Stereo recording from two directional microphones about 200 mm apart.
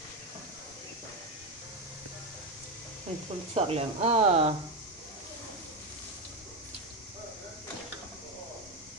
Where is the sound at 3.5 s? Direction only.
30° right (ahead or behind).